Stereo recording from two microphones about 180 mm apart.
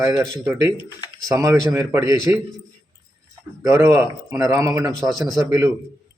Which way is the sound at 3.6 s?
15° right (ahead or behind).